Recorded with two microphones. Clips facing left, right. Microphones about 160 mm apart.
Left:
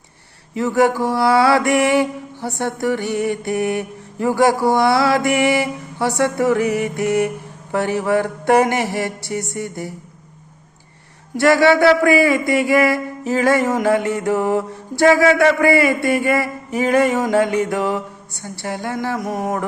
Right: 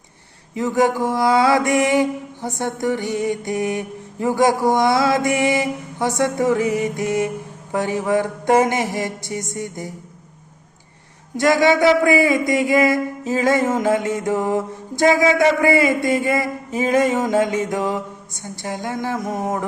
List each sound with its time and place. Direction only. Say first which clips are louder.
0.5 s mantra: left 2 dB; 20° right (ahead or behind)
11.3 s mantra: left 2 dB; 20° right (ahead or behind)